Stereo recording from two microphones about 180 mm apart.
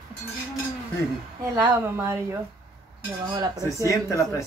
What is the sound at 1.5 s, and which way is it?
Speech, 15° right (ahead or behind).